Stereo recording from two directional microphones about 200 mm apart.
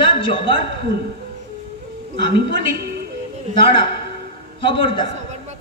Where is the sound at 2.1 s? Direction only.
25° left (ahead or behind).